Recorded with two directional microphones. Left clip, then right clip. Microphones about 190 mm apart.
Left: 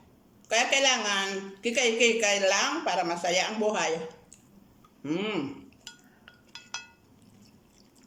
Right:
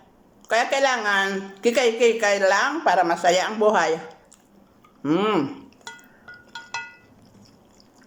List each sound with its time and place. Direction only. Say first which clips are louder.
0.4 s a woman's voice: right 4 dB; 15° left (ahead or behind)
5.0 s a woman's voice: right 10 dB; 15° left (ahead or behind)